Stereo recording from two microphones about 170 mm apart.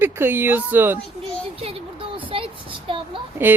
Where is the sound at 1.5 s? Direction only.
35° right (ahead or behind).